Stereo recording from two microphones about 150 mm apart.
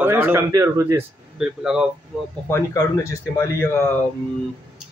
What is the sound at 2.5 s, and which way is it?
Speech, 20° left (ahead or behind).